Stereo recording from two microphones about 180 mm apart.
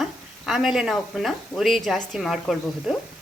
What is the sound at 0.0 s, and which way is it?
A woman's voice, centre (ahead or behind).